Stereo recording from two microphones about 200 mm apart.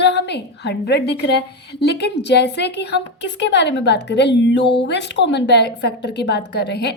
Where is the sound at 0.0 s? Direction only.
60° left (ahead or behind).